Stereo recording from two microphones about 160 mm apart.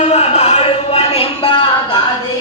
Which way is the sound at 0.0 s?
45° left (ahead or behind).